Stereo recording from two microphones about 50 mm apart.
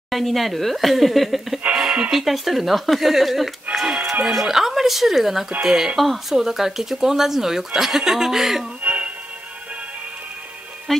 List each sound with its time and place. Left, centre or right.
0.1 s speech: centre
1.8 s speech: centre
3.8 s music: centre
4.3 s speech: centre
5.9 s speech: centre
8.8 s music: right
10.9 s music: centre